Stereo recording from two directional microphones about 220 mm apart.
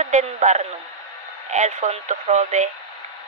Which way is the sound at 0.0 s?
35° right (ahead or behind).